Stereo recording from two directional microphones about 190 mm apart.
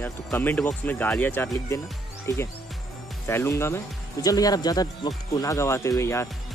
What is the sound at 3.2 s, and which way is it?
Speech, 15° left (ahead or behind).